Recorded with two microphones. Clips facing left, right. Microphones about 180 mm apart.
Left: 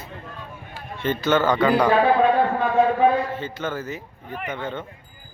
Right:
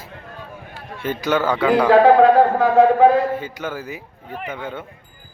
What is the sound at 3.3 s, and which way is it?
Speech, 10° right (ahead or behind).